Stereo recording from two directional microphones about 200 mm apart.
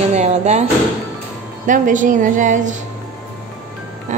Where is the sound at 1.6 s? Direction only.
40° right (ahead or behind).